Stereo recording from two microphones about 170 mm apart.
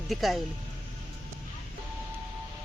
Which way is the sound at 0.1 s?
Centre (ahead or behind).